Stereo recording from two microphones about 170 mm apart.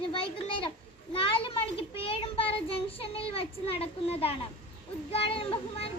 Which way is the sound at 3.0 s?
35° left (ahead or behind).